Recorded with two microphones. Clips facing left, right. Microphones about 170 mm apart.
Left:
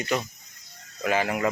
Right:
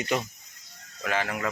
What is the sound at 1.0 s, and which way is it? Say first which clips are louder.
Speech: left 4 dB; 10° left (ahead or behind).